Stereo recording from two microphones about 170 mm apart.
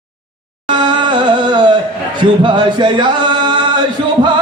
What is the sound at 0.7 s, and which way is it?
Music, 25° right (ahead or behind).